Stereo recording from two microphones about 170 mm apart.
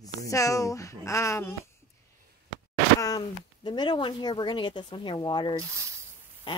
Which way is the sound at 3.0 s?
25° left (ahead or behind).